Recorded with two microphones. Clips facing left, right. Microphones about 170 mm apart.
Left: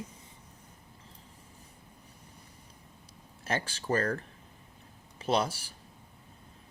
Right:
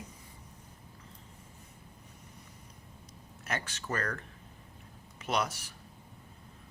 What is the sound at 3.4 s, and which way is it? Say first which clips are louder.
Speech: left 4 dB; 30° left (ahead or behind).